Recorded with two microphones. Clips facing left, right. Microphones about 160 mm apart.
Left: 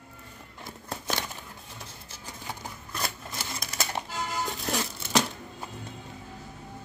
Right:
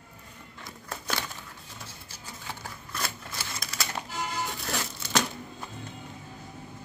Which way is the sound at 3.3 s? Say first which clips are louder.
Left 1 dB; 20° left (ahead or behind).